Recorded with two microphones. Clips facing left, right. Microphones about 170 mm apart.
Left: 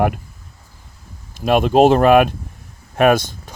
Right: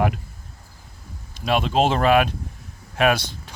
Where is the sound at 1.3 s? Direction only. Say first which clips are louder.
Left 7 dB; 50° left (ahead or behind).